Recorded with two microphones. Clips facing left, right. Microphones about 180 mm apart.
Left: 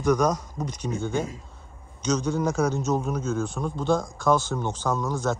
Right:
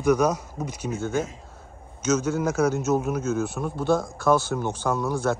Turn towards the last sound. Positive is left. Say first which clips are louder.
# right 2 dB
turn(degrees=-10)  # may be behind; listen again after turning